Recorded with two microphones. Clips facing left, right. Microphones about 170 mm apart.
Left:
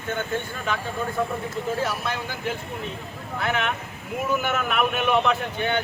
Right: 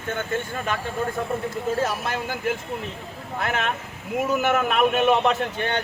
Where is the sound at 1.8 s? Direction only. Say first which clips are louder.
Right 2 dB; 45° right (ahead or behind).